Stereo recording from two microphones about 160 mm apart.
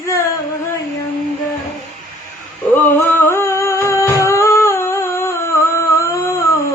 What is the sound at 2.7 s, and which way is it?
Music, 15° left (ahead or behind).